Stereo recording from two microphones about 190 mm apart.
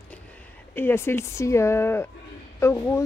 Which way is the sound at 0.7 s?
10° left (ahead or behind).